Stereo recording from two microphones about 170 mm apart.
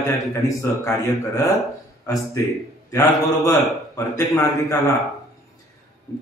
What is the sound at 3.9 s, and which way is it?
Speech, 20° left (ahead or behind).